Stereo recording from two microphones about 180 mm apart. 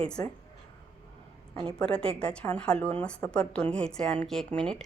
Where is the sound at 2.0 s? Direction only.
5° left (ahead or behind).